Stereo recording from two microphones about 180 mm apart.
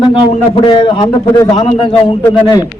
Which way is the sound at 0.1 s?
30° left (ahead or behind).